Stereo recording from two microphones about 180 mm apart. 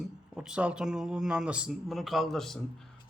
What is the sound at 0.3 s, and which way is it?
Speech, 5° right (ahead or behind).